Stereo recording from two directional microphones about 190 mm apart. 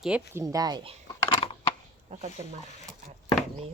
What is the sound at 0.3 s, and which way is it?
Speech, 20° right (ahead or behind).